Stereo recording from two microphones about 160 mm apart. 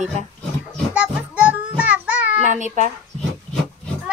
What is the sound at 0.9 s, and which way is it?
Child singing, 10° right (ahead or behind).